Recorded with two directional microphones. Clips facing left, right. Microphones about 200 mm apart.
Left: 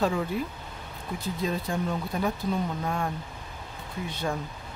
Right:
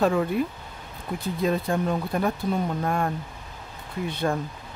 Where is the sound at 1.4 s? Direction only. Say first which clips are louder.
Right 6 dB; 60° right (ahead or behind).